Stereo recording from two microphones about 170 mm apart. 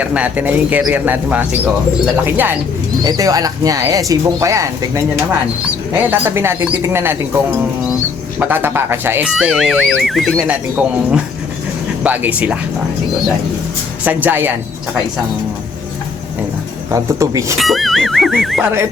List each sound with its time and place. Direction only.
0.0 s speech: 10° right (ahead or behind)
8.4 s speech: 10° right (ahead or behind)
14.0 s speech: 10° right (ahead or behind)
16.9 s speech: 20° right (ahead or behind)
17.6 s music: centre (ahead or behind)